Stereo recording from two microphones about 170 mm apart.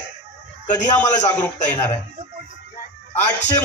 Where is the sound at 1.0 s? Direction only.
45° left (ahead or behind).